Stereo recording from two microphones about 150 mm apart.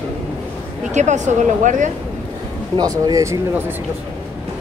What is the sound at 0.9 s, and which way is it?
Speech, 50° right (ahead or behind).